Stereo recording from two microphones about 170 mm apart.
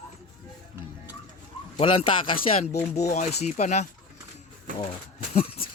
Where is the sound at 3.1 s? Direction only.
40° left (ahead or behind).